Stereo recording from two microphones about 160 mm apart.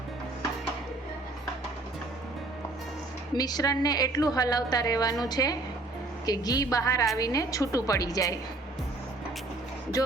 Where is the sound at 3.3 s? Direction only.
25° left (ahead or behind).